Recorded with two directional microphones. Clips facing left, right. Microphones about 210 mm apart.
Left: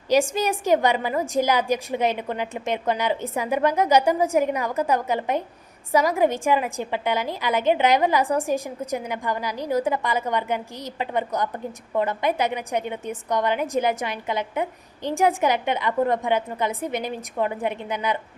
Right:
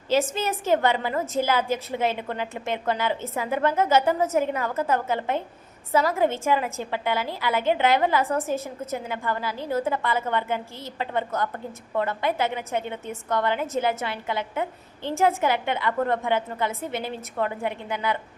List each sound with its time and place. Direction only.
0.1 s a woman's voice: 15° left (ahead or behind)